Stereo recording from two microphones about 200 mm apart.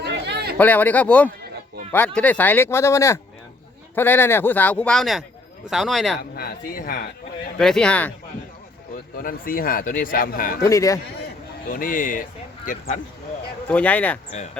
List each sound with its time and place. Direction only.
0.0 s a sound: 55° right (ahead or behind)
0.6 s speech: 10° left (ahead or behind)
6.3 s a man's voice: 45° left (ahead or behind)
7.6 s speech: 5° left (ahead or behind)
9.2 s a man's voice: 45° left (ahead or behind)
10.6 s speech: 15° left (ahead or behind)
11.7 s a man's voice: 45° left (ahead or behind)
13.7 s speech: 5° left (ahead or behind)